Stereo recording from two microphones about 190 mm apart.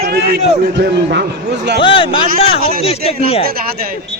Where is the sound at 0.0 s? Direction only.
55° right (ahead or behind).